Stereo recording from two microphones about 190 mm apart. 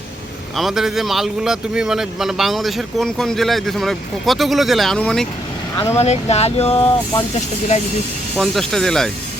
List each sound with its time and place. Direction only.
0.5 s speech: centre (ahead or behind)
5.7 s speech: 15° left (ahead or behind)
6.0 s speech: 35° left (ahead or behind)
8.4 s speech: centre (ahead or behind)